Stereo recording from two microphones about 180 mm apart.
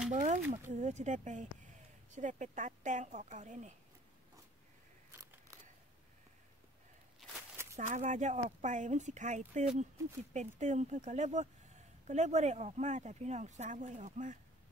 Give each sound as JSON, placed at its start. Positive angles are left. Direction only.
{"t": 0.1, "sound": "a sound", "side_deg": -45}
{"t": 0.5, "sound": "a woman's voice", "side_deg": -40}
{"t": 7.7, "sound": "speech", "side_deg": -40}